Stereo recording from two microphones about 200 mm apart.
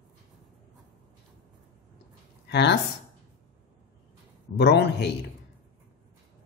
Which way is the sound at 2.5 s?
60° left (ahead or behind).